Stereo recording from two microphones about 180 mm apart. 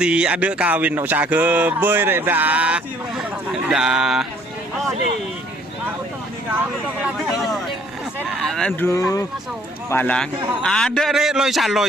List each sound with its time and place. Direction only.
0.0 s a sound: 5° right (ahead or behind)
7.0 s a man's voice: centre (ahead or behind)
8.9 s speech: 20° left (ahead or behind)
9.9 s a man's voice: 10° left (ahead or behind)